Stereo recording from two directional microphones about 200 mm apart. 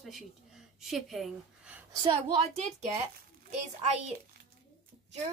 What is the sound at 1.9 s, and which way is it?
Speech, 20° right (ahead or behind).